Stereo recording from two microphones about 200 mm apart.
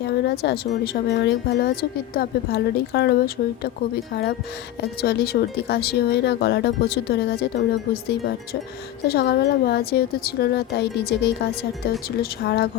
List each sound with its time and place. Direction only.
0.0 s speech: 55° left (ahead or behind)
9.0 s speech: 50° left (ahead or behind)